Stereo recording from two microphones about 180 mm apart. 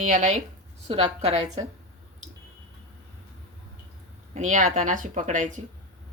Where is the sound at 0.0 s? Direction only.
45° right (ahead or behind).